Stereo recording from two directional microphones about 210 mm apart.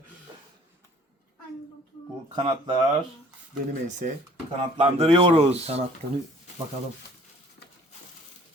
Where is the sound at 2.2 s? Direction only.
20° right (ahead or behind).